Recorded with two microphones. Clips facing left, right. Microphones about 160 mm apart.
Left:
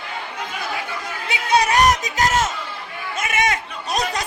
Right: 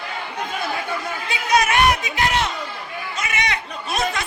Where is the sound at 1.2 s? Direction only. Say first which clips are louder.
Left 1 dB; 25° left (ahead or behind); by 2.5 s 45° left (ahead or behind).